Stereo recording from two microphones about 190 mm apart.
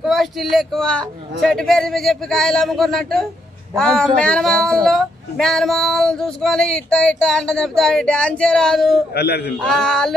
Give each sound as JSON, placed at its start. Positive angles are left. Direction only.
{"t": 0.0, "sound": "speech", "side_deg": 0}
{"t": 9.1, "sound": "a man's voice", "side_deg": 55}
{"t": 9.7, "sound": "speech", "side_deg": 5}